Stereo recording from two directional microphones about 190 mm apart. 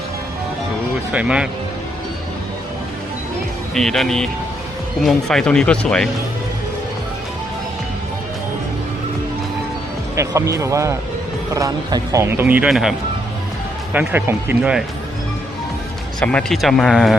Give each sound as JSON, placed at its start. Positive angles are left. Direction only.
{"t": 1.1, "sound": "speech", "side_deg": -5}
{"t": 3.8, "sound": "speech", "side_deg": 0}
{"t": 10.2, "sound": "speech", "side_deg": -15}
{"t": 13.9, "sound": "speech", "side_deg": -10}
{"t": 16.2, "sound": "speech", "side_deg": 5}